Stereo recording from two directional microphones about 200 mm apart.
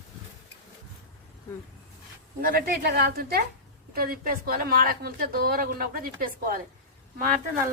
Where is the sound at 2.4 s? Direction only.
45° right (ahead or behind).